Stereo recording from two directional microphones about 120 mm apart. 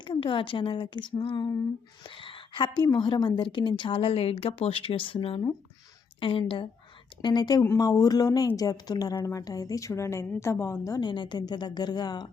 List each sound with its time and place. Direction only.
0.0 s a woman's voice: 45° left (ahead or behind)
7.2 s a woman's voice: 35° left (ahead or behind)
11.0 s a woman's voice: 40° left (ahead or behind)